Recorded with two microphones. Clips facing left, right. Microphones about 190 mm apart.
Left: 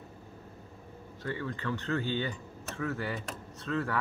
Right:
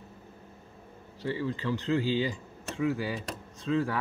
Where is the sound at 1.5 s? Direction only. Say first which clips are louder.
Right 4 dB; 20° right (ahead or behind).